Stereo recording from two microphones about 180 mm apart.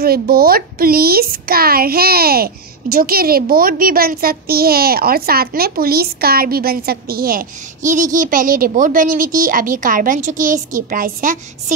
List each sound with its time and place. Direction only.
0.0 s a woman's voice: 55° right (ahead or behind)